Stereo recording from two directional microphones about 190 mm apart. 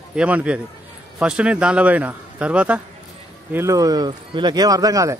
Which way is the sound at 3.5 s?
15° right (ahead or behind).